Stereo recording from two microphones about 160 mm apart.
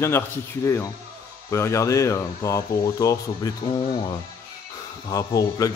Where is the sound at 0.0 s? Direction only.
15° left (ahead or behind).